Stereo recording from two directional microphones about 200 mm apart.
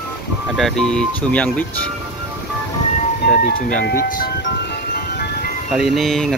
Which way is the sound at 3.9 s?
45° left (ahead or behind).